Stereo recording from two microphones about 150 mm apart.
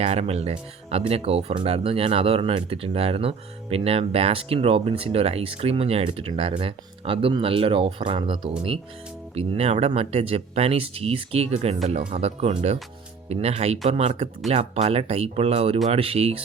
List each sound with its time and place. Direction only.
0.0 s speech: 45° right (ahead or behind)